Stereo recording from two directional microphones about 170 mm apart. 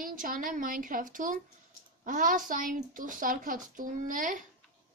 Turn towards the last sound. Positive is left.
turn(degrees=-50)  # may be behind; listen again after turning